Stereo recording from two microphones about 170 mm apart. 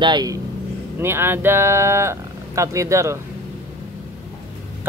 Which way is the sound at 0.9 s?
15° right (ahead or behind).